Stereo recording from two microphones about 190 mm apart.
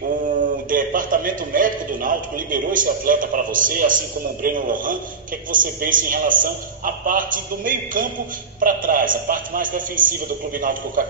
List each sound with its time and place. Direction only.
0.7 s a man's voice: 45° right (ahead or behind)